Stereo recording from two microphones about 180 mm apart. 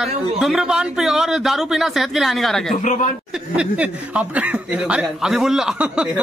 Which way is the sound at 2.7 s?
45° left (ahead or behind).